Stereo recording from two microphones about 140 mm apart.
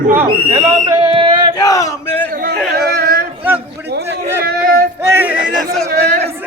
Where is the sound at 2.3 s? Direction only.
90° right.